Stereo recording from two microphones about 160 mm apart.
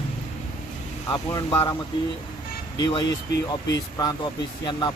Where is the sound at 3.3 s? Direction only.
90° left.